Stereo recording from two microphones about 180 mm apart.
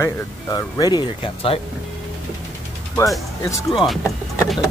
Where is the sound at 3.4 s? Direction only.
15° left (ahead or behind).